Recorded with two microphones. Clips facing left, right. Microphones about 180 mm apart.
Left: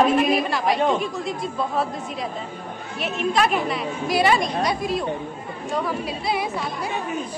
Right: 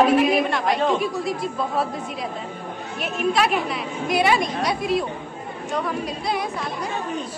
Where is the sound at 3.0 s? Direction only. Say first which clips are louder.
Even; centre (ahead or behind).